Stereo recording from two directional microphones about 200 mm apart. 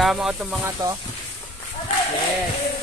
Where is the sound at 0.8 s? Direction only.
15° right (ahead or behind).